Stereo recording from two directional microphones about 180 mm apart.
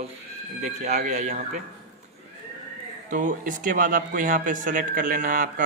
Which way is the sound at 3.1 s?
45° right (ahead or behind).